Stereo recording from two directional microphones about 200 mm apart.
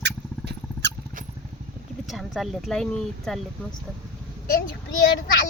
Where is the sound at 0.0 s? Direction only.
60° right (ahead or behind).